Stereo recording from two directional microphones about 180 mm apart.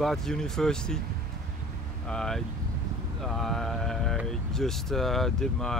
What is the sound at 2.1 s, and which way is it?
Speech, 5° left (ahead or behind).